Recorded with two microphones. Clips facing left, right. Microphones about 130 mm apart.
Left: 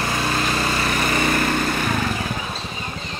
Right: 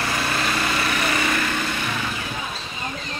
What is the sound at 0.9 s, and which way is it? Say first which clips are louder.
Lawn mower: left 2 dB; 40° left (ahead or behind).